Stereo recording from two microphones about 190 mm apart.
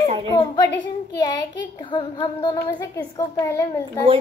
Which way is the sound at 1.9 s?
25° left (ahead or behind).